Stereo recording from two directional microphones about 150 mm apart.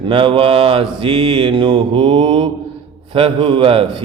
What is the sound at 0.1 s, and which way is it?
Speech, 35° right (ahead or behind).